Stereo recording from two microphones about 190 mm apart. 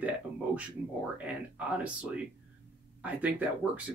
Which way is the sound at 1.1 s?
5° right (ahead or behind).